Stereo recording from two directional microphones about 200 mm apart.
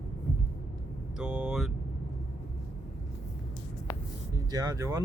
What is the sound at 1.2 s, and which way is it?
Speech, 5° right (ahead or behind).